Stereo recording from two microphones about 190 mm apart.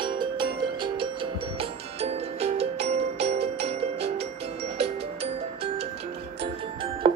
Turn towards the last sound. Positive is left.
turn(degrees=-30)  # may be behind; listen again after turning